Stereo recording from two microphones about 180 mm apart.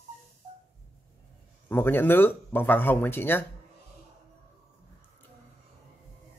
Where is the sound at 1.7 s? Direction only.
10° left (ahead or behind).